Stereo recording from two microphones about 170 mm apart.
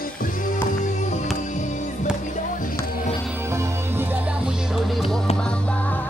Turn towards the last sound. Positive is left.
turn(degrees=-15)  # may be behind; listen again after turning